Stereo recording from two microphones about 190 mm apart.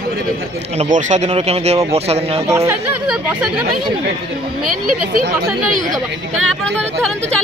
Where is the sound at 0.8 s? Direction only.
40° right (ahead or behind).